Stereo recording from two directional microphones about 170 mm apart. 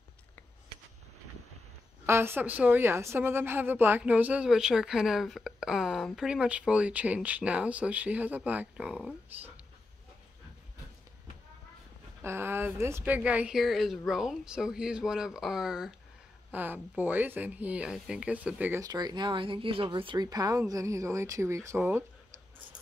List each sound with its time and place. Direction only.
2.0 s a woman's voice: 15° right (ahead or behind)
12.2 s a woman's voice: 15° right (ahead or behind)